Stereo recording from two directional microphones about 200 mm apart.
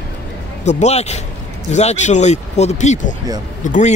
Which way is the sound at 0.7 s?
35° left (ahead or behind).